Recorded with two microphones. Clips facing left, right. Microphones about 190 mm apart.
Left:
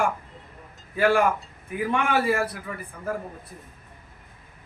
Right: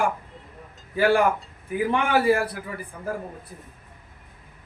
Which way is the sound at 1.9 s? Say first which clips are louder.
Right 2 dB; 30° right (ahead or behind).